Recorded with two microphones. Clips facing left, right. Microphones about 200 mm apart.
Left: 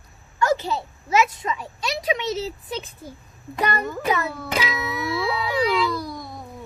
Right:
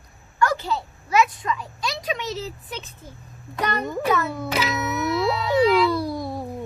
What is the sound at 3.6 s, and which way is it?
Speech, 5° left (ahead or behind).